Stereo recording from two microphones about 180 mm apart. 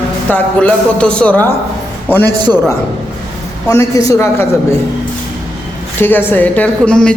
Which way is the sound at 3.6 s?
20° left (ahead or behind).